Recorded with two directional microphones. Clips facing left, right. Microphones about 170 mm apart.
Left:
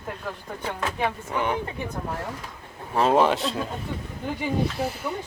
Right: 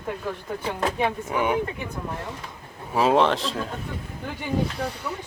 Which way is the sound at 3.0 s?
Centre (ahead or behind).